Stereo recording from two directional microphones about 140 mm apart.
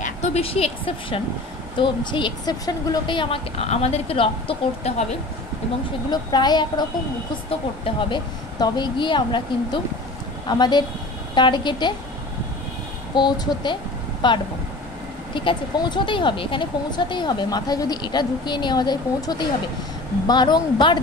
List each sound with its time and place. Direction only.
0.0 s speech: 50° left (ahead or behind)
6.0 s speech: 30° left (ahead or behind)
13.1 s speech: 35° left (ahead or behind)